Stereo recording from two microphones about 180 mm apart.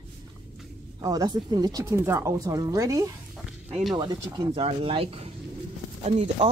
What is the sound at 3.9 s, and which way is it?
A woman's voice, 25° right (ahead or behind).